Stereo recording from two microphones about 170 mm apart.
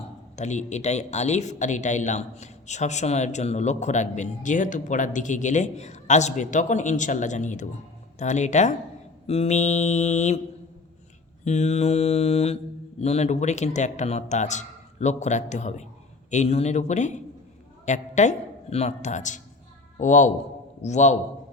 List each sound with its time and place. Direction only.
0.3 s a man's voice: 45° left (ahead or behind)
9.2 s mantra: 35° left (ahead or behind)
11.4 s mantra: 40° left (ahead or behind)
13.0 s a man's voice: 40° left (ahead or behind)